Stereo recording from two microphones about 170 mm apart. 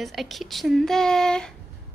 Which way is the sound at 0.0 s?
Centre (ahead or behind).